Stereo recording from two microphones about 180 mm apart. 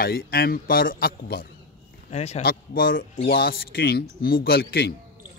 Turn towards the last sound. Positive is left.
turn(degrees=60)  # may be behind; listen again after turning